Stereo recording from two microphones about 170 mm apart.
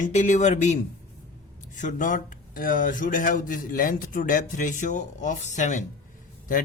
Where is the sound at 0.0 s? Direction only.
45° left (ahead or behind).